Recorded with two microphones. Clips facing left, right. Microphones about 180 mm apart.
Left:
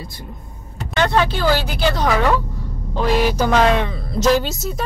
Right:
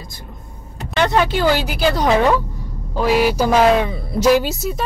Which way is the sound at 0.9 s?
15° right (ahead or behind).